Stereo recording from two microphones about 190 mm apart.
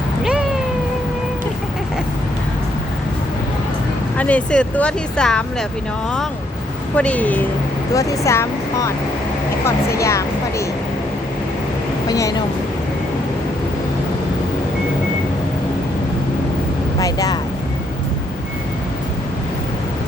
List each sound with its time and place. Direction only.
0.2 s cat: 5° right (ahead or behind)
4.2 s speech: 5° left (ahead or behind)
6.9 s speech: 5° left (ahead or behind)
12.0 s speech: 15° left (ahead or behind)
17.0 s speech: 20° left (ahead or behind)